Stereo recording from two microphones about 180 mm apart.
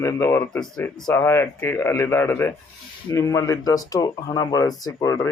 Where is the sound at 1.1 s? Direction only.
15° left (ahead or behind).